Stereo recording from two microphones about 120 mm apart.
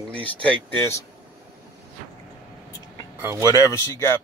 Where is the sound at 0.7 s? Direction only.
20° left (ahead or behind).